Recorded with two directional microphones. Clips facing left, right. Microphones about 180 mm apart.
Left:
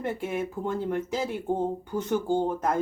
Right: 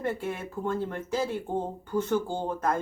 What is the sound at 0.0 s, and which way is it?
A woman's voice, 15° left (ahead or behind).